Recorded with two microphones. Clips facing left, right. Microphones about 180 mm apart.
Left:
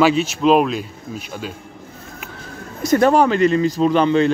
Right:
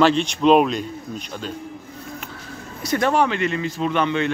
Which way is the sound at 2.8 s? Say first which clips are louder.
Left 6 dB; 40° left (ahead or behind).